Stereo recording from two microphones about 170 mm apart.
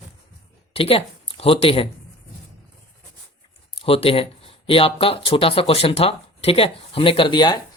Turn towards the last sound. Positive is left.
turn(degrees=25)  # may be behind; listen again after turning